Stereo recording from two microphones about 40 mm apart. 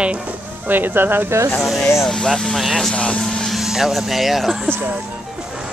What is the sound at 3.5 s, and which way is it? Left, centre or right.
Speech, centre.